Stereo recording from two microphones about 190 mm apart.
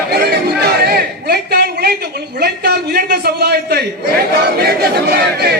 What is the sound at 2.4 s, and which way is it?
A man's voice, 55° right (ahead or behind).